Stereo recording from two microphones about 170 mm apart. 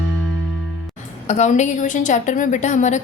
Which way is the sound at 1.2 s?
45° left (ahead or behind).